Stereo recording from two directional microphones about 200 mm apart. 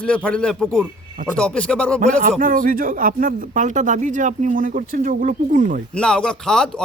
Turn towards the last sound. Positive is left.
turn(degrees=5)  # may be behind; listen again after turning